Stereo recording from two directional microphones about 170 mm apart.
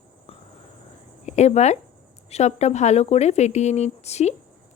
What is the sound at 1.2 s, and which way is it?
Speech, 40° left (ahead or behind).